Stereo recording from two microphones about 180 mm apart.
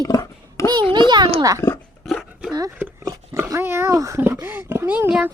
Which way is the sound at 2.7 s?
15° right (ahead or behind).